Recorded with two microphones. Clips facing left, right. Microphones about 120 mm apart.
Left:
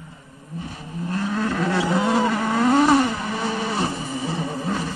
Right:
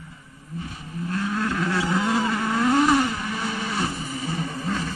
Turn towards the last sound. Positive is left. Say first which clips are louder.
# left 2 dB
turn(degrees=25)  # may be behind; listen again after turning